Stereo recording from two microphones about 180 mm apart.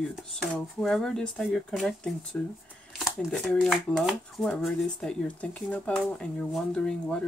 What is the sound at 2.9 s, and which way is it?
Shuffling cards, centre (ahead or behind).